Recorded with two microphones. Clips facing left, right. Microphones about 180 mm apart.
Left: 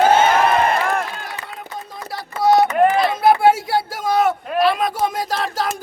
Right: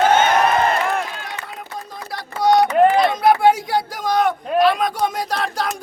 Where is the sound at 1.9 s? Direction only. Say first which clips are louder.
Left 1 dB; centre (ahead or behind).